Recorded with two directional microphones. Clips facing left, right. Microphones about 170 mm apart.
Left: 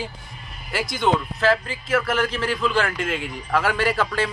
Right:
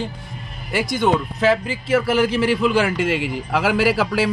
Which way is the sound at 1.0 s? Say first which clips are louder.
Right 2 dB; 10° right (ahead or behind).